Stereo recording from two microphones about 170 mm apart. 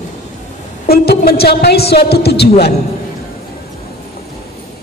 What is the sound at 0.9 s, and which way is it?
A woman's voice, 65° left (ahead or behind).